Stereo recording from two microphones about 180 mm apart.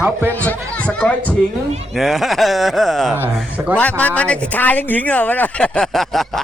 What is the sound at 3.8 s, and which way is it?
Speech, 10° left (ahead or behind).